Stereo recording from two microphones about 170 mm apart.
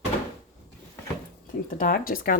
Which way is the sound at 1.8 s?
55° left (ahead or behind).